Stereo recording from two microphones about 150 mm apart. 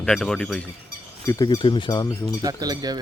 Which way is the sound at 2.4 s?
25° right (ahead or behind).